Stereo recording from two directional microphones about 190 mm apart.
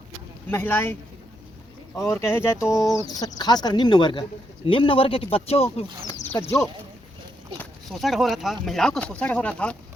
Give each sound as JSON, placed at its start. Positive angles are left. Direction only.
{"t": 0.5, "sound": "speech", "side_deg": 10}
{"t": 2.0, "sound": "speech", "side_deg": 15}
{"t": 2.6, "sound": "speech", "side_deg": 0}
{"t": 2.9, "sound": "speech", "side_deg": 20}
{"t": 7.6, "sound": "speech", "side_deg": 0}